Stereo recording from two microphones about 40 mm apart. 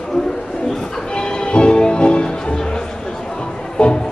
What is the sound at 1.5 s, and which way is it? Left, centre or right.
Music, left.